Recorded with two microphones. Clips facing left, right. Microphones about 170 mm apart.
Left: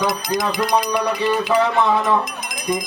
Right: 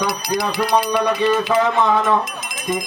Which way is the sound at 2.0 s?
15° left (ahead or behind).